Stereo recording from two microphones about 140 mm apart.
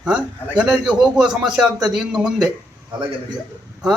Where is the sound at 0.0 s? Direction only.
5° right (ahead or behind).